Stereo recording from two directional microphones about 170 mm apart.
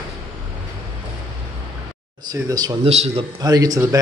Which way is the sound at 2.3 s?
20° right (ahead or behind).